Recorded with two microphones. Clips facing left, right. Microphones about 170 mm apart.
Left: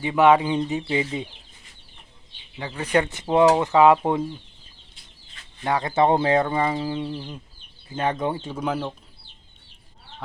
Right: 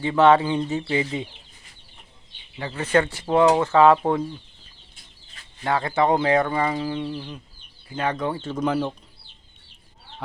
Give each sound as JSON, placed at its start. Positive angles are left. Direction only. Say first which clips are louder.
{"t": 0.0, "sound": "speech", "louder": "right 1 dB", "side_deg": 15}
{"t": 2.6, "sound": "speech", "louder": "right 1 dB", "side_deg": 10}
{"t": 5.6, "sound": "speech", "louder": "left 1 dB", "side_deg": 20}